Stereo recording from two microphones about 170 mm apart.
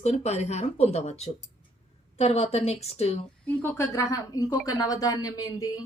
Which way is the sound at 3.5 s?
15° left (ahead or behind).